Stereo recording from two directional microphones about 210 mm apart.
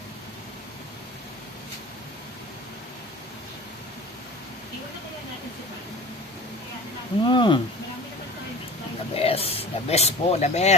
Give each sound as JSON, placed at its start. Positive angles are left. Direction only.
{"t": 7.3, "sound": "speech", "side_deg": 20}
{"t": 9.1, "sound": "speech", "side_deg": 30}